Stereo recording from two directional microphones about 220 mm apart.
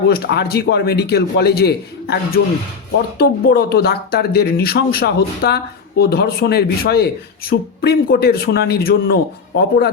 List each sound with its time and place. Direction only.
0.1 s speech: 50° left (ahead or behind)